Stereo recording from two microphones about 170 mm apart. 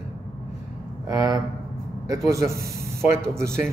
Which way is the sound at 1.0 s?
20° right (ahead or behind).